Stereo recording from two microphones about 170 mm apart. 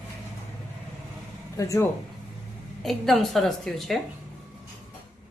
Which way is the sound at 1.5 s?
20° left (ahead or behind).